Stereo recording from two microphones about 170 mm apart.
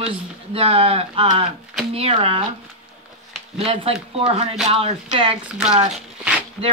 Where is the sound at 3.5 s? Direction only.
35° right (ahead or behind).